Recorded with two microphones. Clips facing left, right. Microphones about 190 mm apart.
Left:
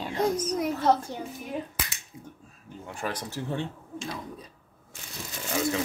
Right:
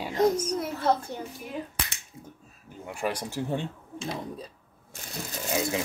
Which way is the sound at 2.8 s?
10° right (ahead or behind).